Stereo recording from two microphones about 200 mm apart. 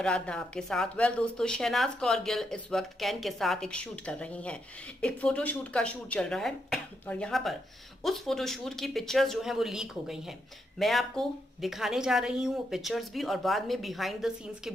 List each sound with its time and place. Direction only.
0.0 s speech: 5° left (ahead or behind)